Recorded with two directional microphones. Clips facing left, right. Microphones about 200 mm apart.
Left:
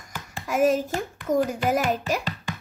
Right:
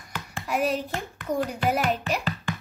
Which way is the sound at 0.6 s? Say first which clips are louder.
Left 5 dB; 45° left (ahead or behind).